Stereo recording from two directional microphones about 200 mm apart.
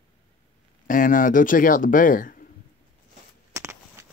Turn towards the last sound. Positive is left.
turn(degrees=-15)  # may be behind; listen again after turning